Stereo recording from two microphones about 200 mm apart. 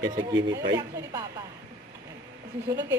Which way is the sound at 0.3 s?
65° right (ahead or behind).